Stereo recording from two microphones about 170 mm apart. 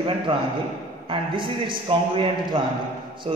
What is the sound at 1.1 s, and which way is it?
A man's voice, 30° right (ahead or behind).